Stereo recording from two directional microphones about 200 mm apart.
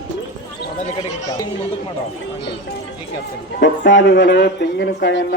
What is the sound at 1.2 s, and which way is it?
Speech, 15° left (ahead or behind).